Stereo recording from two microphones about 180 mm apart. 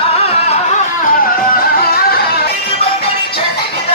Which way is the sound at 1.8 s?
60° left (ahead or behind).